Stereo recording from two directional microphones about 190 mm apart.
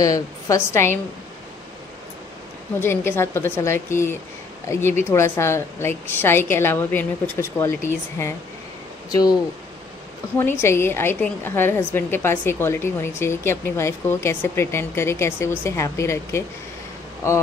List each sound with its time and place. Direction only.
0.0 s a woman's voice: 15° left (ahead or behind)
2.8 s a woman's voice: 10° left (ahead or behind)
10.4 s a woman's voice: 15° left (ahead or behind)